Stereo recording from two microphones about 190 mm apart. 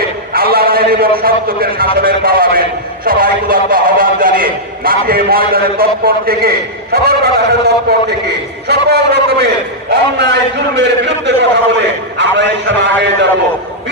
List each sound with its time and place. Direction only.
0.3 s a man's voice: 55° right (ahead or behind)